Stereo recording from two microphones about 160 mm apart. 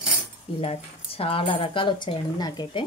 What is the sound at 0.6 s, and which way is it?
Speech, 40° left (ahead or behind).